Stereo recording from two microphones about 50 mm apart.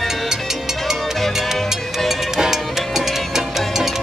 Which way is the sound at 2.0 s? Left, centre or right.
Centre.